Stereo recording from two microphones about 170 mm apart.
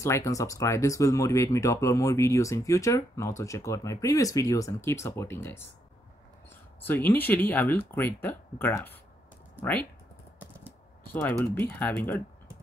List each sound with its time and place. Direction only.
0.0 s speech: 20° left (ahead or behind)
6.9 s speech: 10° left (ahead or behind)
11.1 s speech: 10° left (ahead or behind)